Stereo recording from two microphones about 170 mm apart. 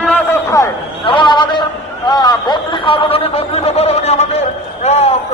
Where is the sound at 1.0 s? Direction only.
30° left (ahead or behind).